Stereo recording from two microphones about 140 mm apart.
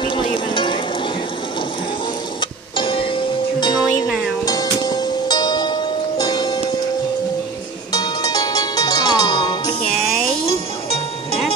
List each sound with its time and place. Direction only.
0.0 s a sound: 35° left (ahead or behind)
2.8 s music: 40° left (ahead or behind)
7.9 s music: 25° left (ahead or behind)
9.9 s music: centre (ahead or behind)